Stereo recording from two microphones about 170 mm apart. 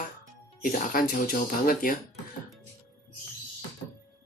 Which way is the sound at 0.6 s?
55° left (ahead or behind).